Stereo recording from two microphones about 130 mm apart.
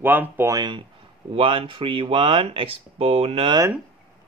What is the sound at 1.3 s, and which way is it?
Speech, 45° right (ahead or behind).